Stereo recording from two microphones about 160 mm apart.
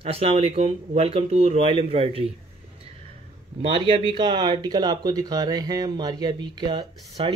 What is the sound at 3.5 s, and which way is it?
Speech, 35° right (ahead or behind).